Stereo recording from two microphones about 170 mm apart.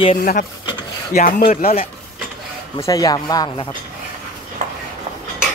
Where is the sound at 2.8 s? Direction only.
20° left (ahead or behind).